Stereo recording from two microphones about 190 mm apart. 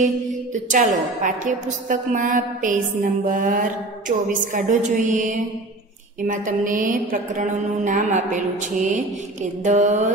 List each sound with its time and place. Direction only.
0.7 s a woman's voice: 45° right (ahead or behind)